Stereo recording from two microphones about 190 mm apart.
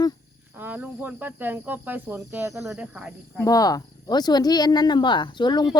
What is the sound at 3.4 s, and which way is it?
Speech, 20° left (ahead or behind).